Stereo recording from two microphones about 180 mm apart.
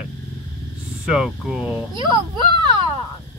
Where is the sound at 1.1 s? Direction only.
5° right (ahead or behind).